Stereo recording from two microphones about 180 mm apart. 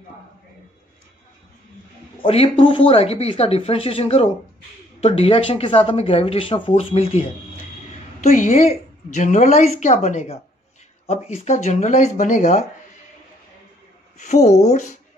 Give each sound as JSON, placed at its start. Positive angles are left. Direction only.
{"t": 2.2, "sound": "speech", "side_deg": 30}
{"t": 14.1, "sound": "speech", "side_deg": 40}